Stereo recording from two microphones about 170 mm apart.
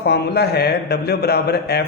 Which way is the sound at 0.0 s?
75° left (ahead or behind).